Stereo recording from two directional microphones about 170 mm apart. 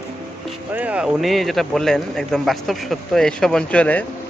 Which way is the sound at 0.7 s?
10° right (ahead or behind).